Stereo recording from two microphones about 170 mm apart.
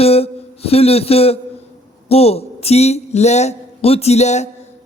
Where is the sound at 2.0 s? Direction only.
35° left (ahead or behind).